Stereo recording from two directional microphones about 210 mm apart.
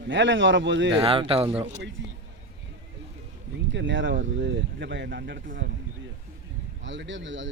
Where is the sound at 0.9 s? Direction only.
25° right (ahead or behind).